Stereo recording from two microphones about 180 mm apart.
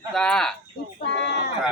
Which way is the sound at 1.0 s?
70° left (ahead or behind).